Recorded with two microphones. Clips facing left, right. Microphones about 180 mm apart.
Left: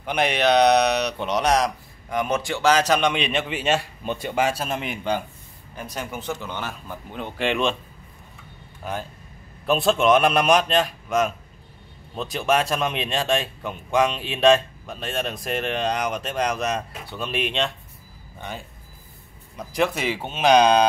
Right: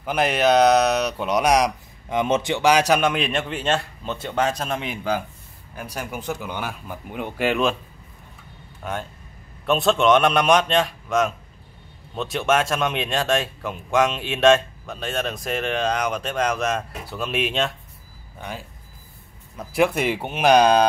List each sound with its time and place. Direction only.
0.0 s speech: 5° right (ahead or behind)
9.7 s speech: centre (ahead or behind)
19.9 s speech: 55° right (ahead or behind)
20.2 s speech: 15° right (ahead or behind)